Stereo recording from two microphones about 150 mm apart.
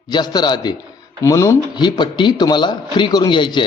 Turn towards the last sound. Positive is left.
turn(degrees=30)  # may be behind; listen again after turning